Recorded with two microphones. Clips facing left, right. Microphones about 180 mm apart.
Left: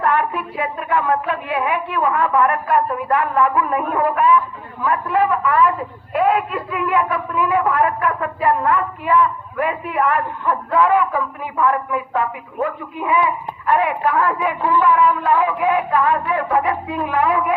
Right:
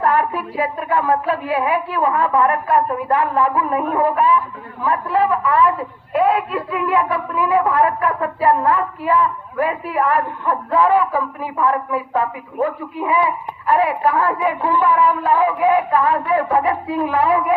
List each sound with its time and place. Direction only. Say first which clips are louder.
0.0 s a woman's voice: right 1 dB; 35° right (ahead or behind)